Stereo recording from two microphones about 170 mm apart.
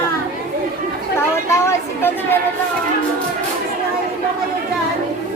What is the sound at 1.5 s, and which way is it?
Vehicle, 15° left (ahead or behind).